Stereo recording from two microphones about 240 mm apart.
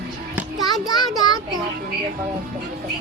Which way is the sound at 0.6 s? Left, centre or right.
Centre.